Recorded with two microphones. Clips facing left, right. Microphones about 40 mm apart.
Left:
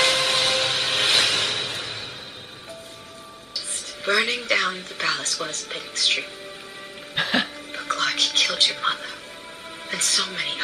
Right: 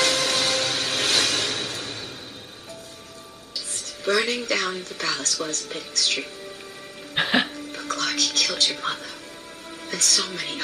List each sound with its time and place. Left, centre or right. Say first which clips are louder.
0.0 s train: left 2 dB; left
3.7 s speech: left 1 dB; left
7.2 s music: right 1 dB; centre
7.5 s music: left 2 dB; left
9.8 s speech: even; left